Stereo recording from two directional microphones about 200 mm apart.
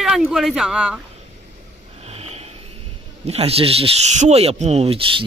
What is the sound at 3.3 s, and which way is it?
Speech, 30° right (ahead or behind).